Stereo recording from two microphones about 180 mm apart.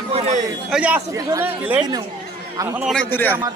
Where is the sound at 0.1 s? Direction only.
35° right (ahead or behind).